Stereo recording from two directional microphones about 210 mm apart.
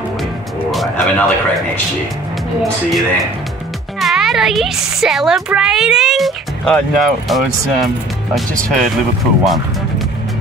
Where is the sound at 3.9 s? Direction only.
Centre (ahead or behind).